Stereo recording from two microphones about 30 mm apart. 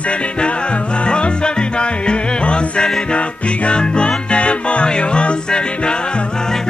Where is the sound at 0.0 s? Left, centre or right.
Left.